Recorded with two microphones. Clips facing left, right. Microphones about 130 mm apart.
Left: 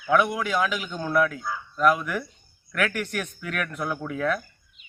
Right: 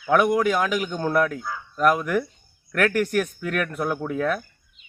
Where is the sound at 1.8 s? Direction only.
50° right (ahead or behind).